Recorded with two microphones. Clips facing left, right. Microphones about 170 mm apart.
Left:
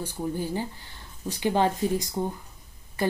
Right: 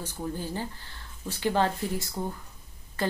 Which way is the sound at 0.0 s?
15° left (ahead or behind).